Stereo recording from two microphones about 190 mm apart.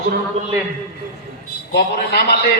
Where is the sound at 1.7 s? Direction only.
60° left (ahead or behind).